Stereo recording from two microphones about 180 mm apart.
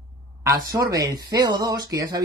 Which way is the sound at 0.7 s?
20° right (ahead or behind).